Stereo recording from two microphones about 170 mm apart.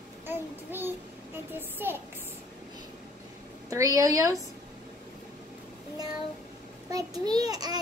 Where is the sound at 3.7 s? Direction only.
20° right (ahead or behind).